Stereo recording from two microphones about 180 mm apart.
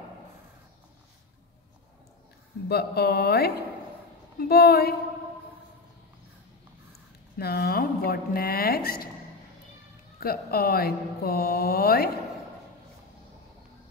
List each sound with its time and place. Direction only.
2.7 s speech: 65° left (ahead or behind)
7.3 s speech: 60° left (ahead or behind)
10.2 s speech: 55° left (ahead or behind)